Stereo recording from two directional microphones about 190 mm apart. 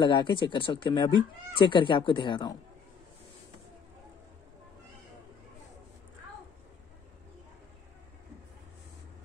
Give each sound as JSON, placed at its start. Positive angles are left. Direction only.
{"t": 0.0, "sound": "speech", "side_deg": 25}